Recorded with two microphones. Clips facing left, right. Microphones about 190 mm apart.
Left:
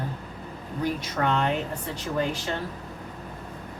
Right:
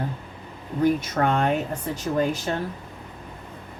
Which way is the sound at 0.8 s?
50° right (ahead or behind).